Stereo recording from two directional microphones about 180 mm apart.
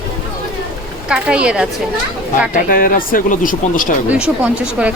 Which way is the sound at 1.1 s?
5° right (ahead or behind).